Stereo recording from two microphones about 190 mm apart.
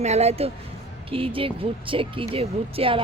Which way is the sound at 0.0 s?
35° right (ahead or behind).